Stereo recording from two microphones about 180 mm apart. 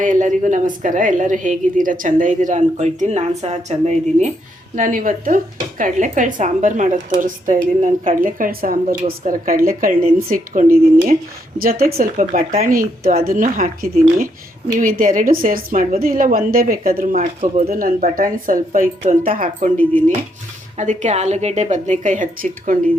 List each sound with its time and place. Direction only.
0.0 s speech: 45° right (ahead or behind)
17.4 s a woman's voice: 35° right (ahead or behind)
17.7 s a woman's voice: 50° right (ahead or behind)